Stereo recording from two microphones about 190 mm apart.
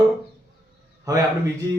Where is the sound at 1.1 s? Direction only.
15° right (ahead or behind).